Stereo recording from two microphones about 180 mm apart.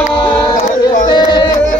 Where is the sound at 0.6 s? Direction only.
45° left (ahead or behind).